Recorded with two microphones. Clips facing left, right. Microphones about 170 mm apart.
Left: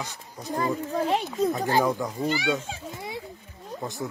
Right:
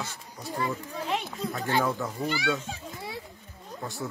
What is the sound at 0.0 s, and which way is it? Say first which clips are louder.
Speech: left 1 dB; 15° left (ahead or behind).